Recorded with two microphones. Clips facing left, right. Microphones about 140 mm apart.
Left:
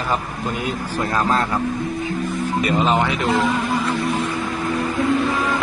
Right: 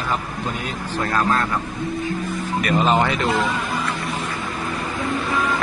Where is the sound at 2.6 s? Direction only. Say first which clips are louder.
Even; 25° left (ahead or behind).